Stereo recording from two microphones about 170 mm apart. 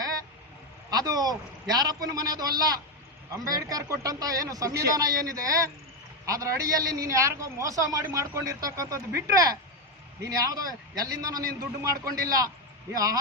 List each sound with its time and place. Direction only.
0.9 s a man's voice: 25° right (ahead or behind)